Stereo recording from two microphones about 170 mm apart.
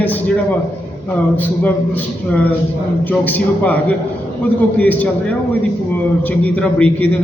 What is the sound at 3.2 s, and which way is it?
Speech, 10° left (ahead or behind).